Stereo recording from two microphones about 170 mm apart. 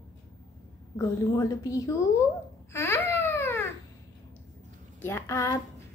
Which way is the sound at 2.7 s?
15° left (ahead or behind).